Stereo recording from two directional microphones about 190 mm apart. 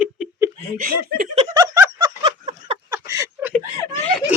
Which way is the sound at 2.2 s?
30° right (ahead or behind).